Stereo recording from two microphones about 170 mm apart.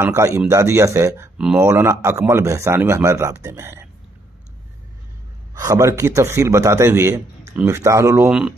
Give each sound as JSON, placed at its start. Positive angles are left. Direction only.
{"t": 0.0, "sound": "a man's voice", "side_deg": -15}
{"t": 5.5, "sound": "a man's voice", "side_deg": -20}